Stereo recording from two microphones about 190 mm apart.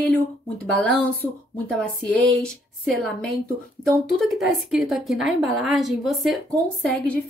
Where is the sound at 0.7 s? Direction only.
5° left (ahead or behind).